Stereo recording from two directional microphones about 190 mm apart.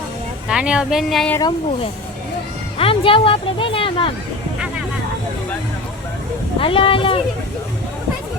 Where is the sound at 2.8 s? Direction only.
30° left (ahead or behind).